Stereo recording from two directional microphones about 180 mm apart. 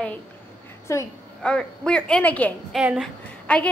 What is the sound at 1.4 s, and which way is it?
A woman's voice, 5° left (ahead or behind).